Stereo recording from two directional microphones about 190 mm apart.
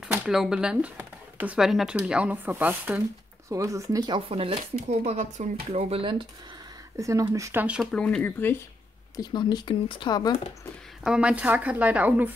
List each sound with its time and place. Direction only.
0.1 s speech: 5° right (ahead or behind); by 6.2 s 30° right (ahead or behind)
7.0 s speech: 20° right (ahead or behind); by 8.5 s 10° left (ahead or behind)
9.1 s speech: 20° left (ahead or behind)
11.1 s speech: 5° right (ahead or behind)